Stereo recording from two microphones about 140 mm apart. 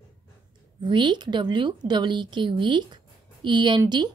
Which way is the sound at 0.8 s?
35° right (ahead or behind).